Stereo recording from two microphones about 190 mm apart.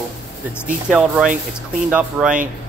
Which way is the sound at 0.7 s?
5° right (ahead or behind).